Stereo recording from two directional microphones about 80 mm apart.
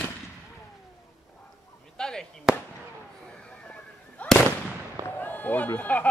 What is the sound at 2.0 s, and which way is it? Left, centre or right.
Chop, centre.